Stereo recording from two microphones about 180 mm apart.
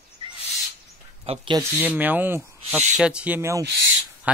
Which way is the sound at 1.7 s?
10° right (ahead or behind).